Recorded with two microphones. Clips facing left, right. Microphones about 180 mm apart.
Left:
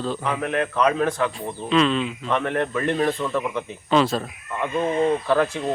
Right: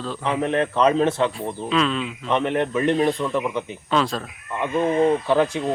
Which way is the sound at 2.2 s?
20° right (ahead or behind).